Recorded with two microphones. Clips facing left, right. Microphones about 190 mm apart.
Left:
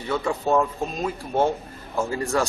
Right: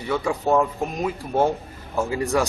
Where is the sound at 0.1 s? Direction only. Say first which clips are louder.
Right 1 dB; 10° right (ahead or behind).